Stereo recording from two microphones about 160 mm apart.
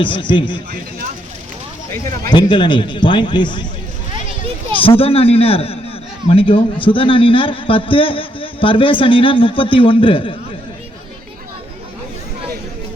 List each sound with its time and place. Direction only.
0.0 s a man's voice: 30° left (ahead or behind)
2.3 s a man's voice: 30° left (ahead or behind)
4.8 s a man's voice: 35° left (ahead or behind)